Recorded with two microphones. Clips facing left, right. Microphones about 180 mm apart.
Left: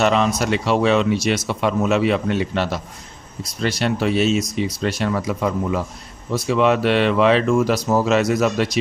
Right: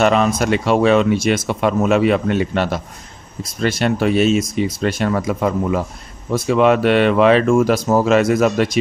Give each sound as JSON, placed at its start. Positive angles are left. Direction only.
{"t": 0.0, "sound": "speech", "side_deg": -50}